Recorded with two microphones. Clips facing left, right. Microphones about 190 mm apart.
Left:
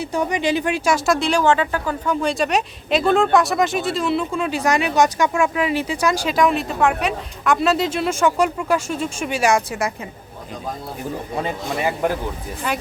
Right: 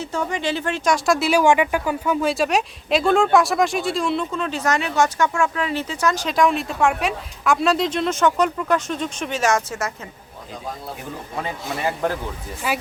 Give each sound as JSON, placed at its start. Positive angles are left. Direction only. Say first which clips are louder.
{"t": 0.0, "sound": "speech", "louder": "left 3 dB", "side_deg": 15}
{"t": 12.0, "sound": "speech", "louder": "left 2 dB", "side_deg": 15}
{"t": 12.7, "sound": "speech", "louder": "even", "side_deg": -5}